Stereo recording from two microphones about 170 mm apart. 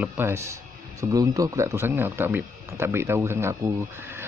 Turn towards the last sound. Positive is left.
turn(degrees=-15)  # may be behind; listen again after turning